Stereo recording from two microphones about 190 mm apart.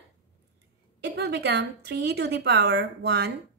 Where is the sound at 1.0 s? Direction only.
60° right (ahead or behind).